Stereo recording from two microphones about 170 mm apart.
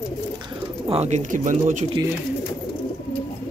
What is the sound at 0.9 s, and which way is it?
Speech, 40° right (ahead or behind).